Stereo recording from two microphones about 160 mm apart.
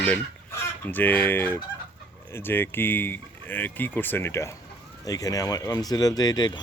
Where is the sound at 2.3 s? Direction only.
15° left (ahead or behind).